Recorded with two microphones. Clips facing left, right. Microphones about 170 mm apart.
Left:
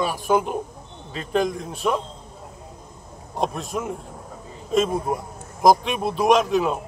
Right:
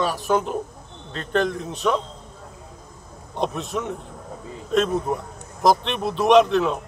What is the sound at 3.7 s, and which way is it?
A man's voice, 5° left (ahead or behind).